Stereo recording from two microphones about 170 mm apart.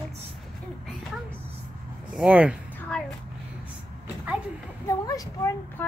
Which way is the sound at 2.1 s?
5° right (ahead or behind).